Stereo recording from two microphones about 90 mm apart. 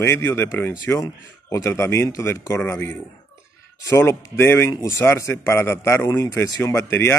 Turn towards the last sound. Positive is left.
turn(degrees=30)  # may be behind; listen again after turning